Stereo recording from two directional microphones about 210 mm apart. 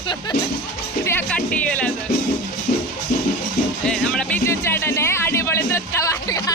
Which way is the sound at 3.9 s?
5° left (ahead or behind).